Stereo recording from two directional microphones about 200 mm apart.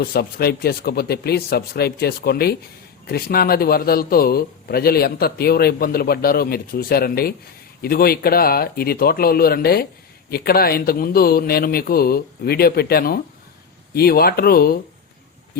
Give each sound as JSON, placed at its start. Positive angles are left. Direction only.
{"t": 0.0, "sound": "a man's voice", "side_deg": 50}